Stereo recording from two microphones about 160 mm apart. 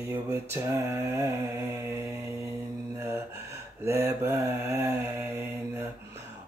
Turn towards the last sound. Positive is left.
turn(degrees=-15)  # may be behind; listen again after turning